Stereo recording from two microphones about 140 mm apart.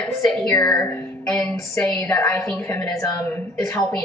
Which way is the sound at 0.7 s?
20° left (ahead or behind).